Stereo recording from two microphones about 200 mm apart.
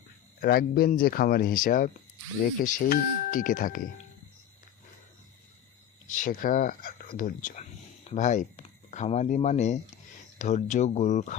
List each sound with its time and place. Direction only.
0.4 s speech: 50° left (ahead or behind)
6.1 s speech: 40° left (ahead or behind)